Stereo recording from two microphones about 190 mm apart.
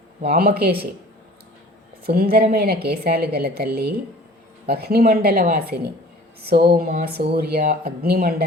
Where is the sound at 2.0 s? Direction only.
55° right (ahead or behind).